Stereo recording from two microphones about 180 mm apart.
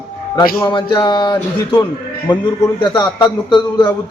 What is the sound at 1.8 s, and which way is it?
Speech, 15° left (ahead or behind).